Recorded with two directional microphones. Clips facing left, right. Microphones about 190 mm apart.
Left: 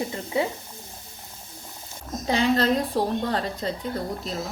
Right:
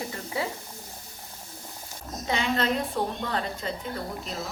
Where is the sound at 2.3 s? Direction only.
35° left (ahead or behind).